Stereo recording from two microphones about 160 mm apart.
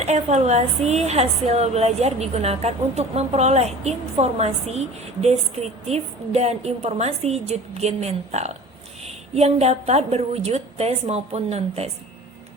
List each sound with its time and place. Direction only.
0.0 s a woman's voice: 45° right (ahead or behind)